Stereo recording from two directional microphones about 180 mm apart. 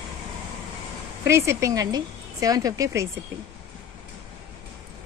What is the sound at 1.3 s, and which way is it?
A woman's voice, 15° right (ahead or behind).